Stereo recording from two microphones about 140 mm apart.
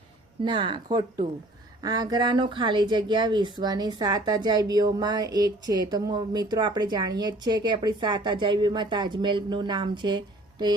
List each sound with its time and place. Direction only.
0.4 s speech: 35° right (ahead or behind)